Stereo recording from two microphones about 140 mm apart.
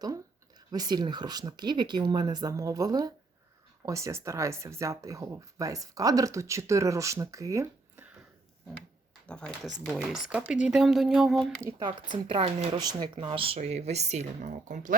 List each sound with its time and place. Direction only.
0.7 s speech: 30° right (ahead or behind)
9.2 s speech: 5° left (ahead or behind)
10.2 s speech: 5° right (ahead or behind)
12.1 s speech: 40° right (ahead or behind)
12.8 s speech: 30° right (ahead or behind); by 14.9 s 65° right (ahead or behind)